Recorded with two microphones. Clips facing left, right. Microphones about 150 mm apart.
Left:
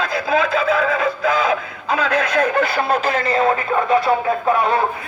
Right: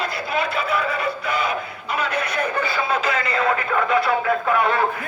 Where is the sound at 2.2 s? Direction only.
90° left.